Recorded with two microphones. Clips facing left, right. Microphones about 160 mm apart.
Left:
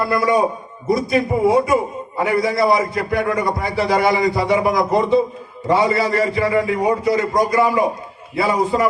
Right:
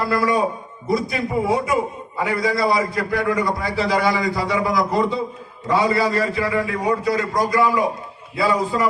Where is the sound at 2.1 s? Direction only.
20° left (ahead or behind).